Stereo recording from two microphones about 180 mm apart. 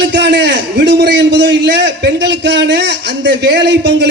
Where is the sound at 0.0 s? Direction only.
80° right.